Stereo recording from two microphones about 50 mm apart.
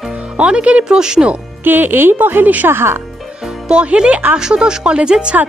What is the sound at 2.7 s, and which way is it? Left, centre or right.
Speech, right.